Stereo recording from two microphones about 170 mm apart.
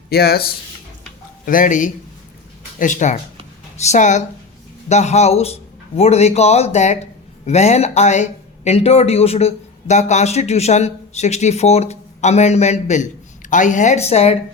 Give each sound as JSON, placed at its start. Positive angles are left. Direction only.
{"t": 0.1, "sound": "speech", "side_deg": 70}
{"t": 1.5, "sound": "a woman's voice", "side_deg": 50}